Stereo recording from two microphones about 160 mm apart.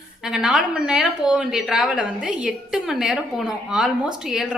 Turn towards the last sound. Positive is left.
turn(degrees=-5)  # may be behind; listen again after turning